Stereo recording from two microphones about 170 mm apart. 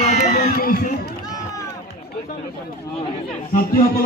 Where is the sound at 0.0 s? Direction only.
40° left (ahead or behind).